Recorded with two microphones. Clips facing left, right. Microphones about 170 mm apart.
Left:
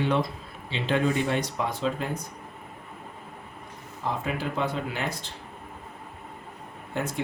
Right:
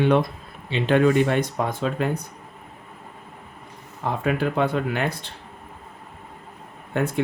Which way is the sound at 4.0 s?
60° right (ahead or behind).